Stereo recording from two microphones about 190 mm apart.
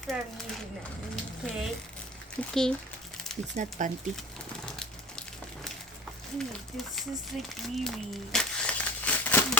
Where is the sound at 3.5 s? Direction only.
40° right (ahead or behind).